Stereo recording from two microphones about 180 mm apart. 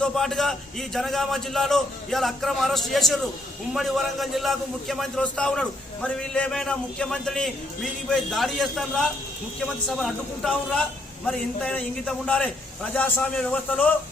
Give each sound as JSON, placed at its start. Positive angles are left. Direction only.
{"t": 0.0, "sound": "a man's voice", "side_deg": 0}